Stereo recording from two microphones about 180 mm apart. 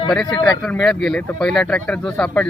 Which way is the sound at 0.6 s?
Centre (ahead or behind).